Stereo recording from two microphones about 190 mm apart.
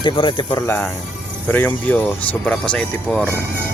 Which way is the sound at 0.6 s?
10° left (ahead or behind).